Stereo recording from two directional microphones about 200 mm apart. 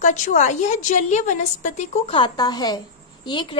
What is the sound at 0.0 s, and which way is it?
A woman's voice, 40° left (ahead or behind).